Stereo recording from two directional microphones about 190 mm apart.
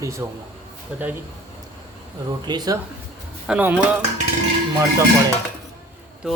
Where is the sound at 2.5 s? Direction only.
20° right (ahead or behind).